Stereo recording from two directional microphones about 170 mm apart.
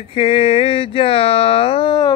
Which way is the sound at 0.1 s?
35° left (ahead or behind).